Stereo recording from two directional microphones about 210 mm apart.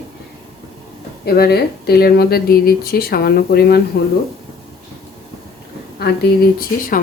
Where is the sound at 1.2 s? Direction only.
50° left (ahead or behind).